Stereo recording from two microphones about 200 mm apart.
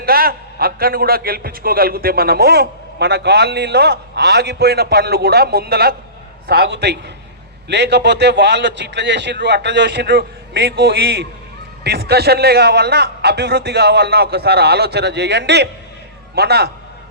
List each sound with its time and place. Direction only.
0.0 s a man's voice: 50° right (ahead or behind)